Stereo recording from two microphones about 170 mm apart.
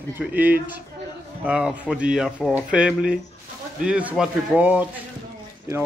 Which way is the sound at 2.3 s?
5° left (ahead or behind).